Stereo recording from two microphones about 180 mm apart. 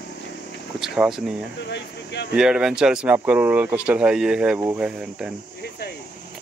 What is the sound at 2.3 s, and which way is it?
Speech, 5° right (ahead or behind).